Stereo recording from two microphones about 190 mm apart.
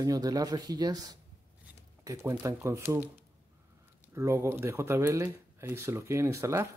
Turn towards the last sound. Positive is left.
turn(degrees=-15)  # may be behind; listen again after turning